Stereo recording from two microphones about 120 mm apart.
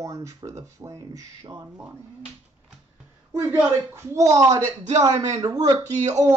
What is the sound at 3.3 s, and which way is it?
Speech, 20° right (ahead or behind).